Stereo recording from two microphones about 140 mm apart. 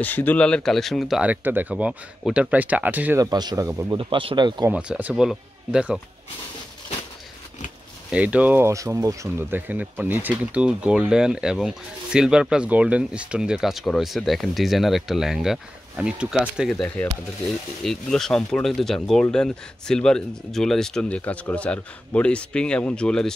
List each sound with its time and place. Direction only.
0.0 s speech: 10° left (ahead or behind); by 3.2 s 15° right (ahead or behind)
3.2 s speech: 30° right (ahead or behind)
3.9 s speech: 35° right (ahead or behind)
4.6 s speech: 10° right (ahead or behind)
8.1 s speech: 10° right (ahead or behind)